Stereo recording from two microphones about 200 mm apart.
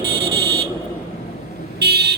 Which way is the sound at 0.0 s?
50° right (ahead or behind).